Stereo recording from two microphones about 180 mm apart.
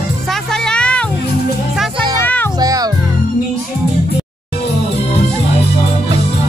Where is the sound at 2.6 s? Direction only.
20° right (ahead or behind).